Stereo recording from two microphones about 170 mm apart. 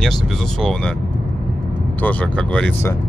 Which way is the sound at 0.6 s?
5° left (ahead or behind).